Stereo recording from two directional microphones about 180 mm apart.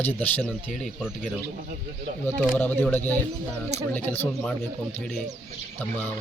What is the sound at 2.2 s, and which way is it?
A man's voice, 10° left (ahead or behind).